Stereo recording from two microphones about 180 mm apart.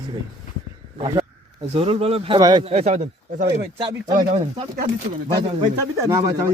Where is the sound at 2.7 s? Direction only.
40° right (ahead or behind).